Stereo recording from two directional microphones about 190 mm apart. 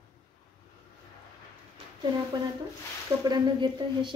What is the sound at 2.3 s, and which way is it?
Speech, 20° right (ahead or behind).